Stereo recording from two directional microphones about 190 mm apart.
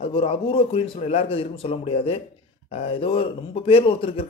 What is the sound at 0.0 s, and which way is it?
A man's voice, 30° left (ahead or behind).